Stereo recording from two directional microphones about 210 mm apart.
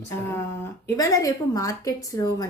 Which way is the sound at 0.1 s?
15° left (ahead or behind).